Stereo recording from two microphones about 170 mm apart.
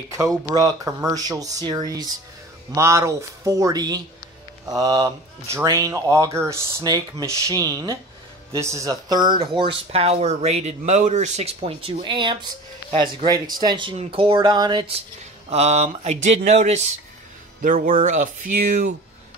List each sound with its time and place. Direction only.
0.1 s speech: 20° right (ahead or behind)
15.5 s mantra: 40° right (ahead or behind)
17.6 s speech: 50° right (ahead or behind)